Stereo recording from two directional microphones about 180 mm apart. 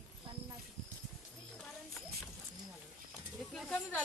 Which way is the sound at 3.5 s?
Centre (ahead or behind).